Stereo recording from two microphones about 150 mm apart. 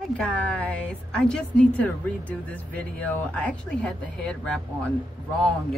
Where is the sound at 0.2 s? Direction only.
5° left (ahead or behind).